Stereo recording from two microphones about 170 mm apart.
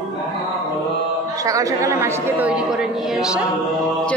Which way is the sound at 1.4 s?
20° right (ahead or behind).